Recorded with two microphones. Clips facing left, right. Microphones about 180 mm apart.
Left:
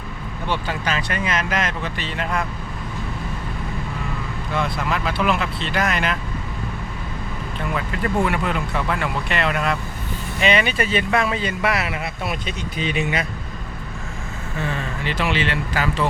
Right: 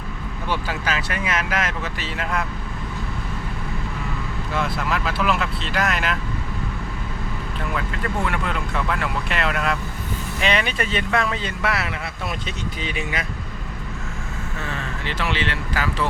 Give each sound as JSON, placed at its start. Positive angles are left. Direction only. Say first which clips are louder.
{"t": 0.4, "sound": "speech", "louder": "left 1 dB", "side_deg": -5}
{"t": 4.5, "sound": "speech", "louder": "left 1 dB", "side_deg": 0}
{"t": 8.2, "sound": "speech", "louder": "left 4 dB", "side_deg": 5}
{"t": 15.0, "sound": "speech", "louder": "left 3 dB", "side_deg": 15}